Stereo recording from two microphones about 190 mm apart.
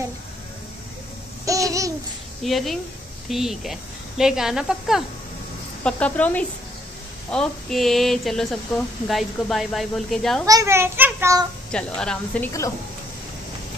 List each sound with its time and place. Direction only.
1.4 s babbling: 15° right (ahead or behind)
2.4 s a woman's voice: centre (ahead or behind)
10.4 s a child's voice: 15° right (ahead or behind)
11.7 s a woman's voice: 5° left (ahead or behind)